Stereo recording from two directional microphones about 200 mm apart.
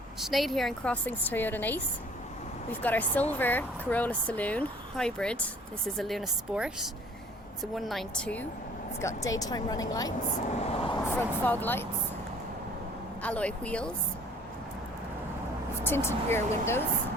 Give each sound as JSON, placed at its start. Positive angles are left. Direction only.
{"t": 0.2, "sound": "speech", "side_deg": 0}
{"t": 2.8, "sound": "speech", "side_deg": 10}
{"t": 10.6, "sound": "speech", "side_deg": 30}
{"t": 11.1, "sound": "speech", "side_deg": 10}
{"t": 13.2, "sound": "speech", "side_deg": 5}
{"t": 15.8, "sound": "speech", "side_deg": 10}